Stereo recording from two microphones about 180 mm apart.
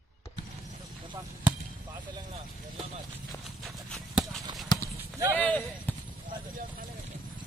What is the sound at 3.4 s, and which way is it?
Horse, centre (ahead or behind).